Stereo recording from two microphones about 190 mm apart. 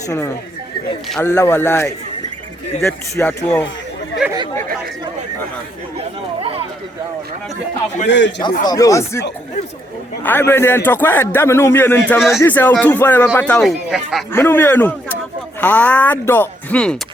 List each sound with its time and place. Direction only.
1.2 s a man's voice: 15° left (ahead or behind)
4.2 s speech: 5° right (ahead or behind)
8.0 s a man's voice: 70° left (ahead or behind)
8.6 s a man's voice: 20° left (ahead or behind)
10.2 s a man's voice: 10° left (ahead or behind)
14.3 s a man's voice: 10° left (ahead or behind)